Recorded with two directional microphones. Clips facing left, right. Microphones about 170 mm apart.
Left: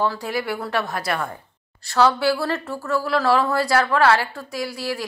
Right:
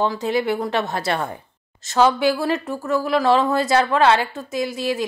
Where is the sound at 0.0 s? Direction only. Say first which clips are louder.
Right 3 dB; 20° right (ahead or behind).